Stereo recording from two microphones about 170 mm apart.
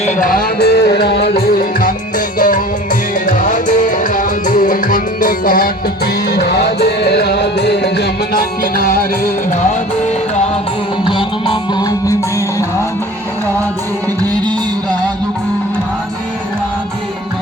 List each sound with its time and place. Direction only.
0.0 s music: 55° left (ahead or behind)
6.2 s music: 80° left; by 10.4 s 45° left (ahead or behind)
11.0 s music: 30° left (ahead or behind)
14.2 s music: 20° right (ahead or behind)